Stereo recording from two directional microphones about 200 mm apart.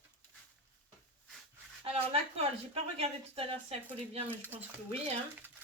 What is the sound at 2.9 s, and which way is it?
Speech, 30° right (ahead or behind).